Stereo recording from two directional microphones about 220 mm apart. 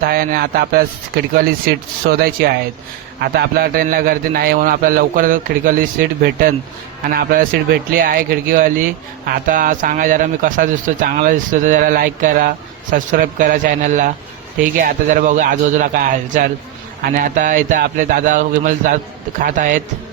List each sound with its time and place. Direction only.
0.0 s speech: 45° right (ahead or behind)